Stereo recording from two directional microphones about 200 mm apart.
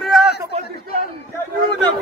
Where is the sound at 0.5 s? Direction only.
30° right (ahead or behind).